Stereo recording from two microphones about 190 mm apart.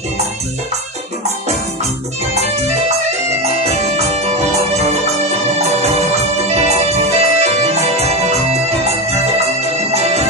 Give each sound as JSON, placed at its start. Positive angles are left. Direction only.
{"t": 3.4, "sound": "music", "side_deg": -35}